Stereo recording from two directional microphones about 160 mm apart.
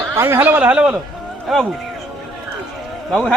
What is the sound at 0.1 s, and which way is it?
Speech, 15° right (ahead or behind).